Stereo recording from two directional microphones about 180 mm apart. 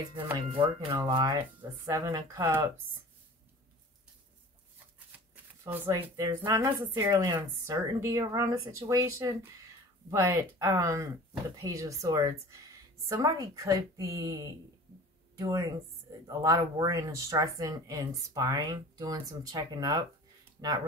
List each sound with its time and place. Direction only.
0.1 s speech: 25° right (ahead or behind)
5.3 s speech: 10° right (ahead or behind)